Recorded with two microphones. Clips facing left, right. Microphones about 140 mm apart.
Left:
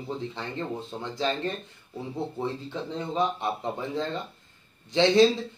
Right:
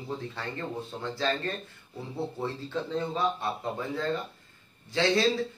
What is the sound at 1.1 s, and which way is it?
Speech, 15° left (ahead or behind).